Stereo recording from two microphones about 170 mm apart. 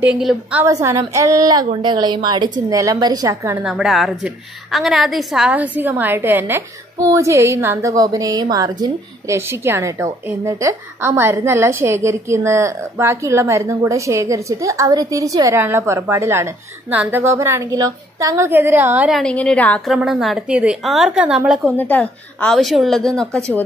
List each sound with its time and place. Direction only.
0.0 s a woman's voice: 5° right (ahead or behind)
0.7 s a woman's voice: 20° right (ahead or behind)
3.6 s a woman's voice: 5° right (ahead or behind)
21.7 s a woman's voice: 10° left (ahead or behind)